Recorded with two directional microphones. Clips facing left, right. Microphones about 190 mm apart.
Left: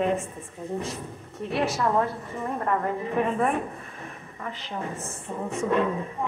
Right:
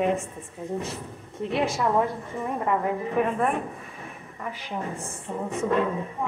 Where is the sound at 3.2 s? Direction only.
Centre (ahead or behind).